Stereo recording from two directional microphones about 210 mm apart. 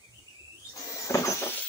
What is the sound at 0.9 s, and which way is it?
Vehicle, 15° left (ahead or behind).